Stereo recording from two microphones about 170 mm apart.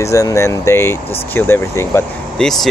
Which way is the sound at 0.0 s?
20° left (ahead or behind).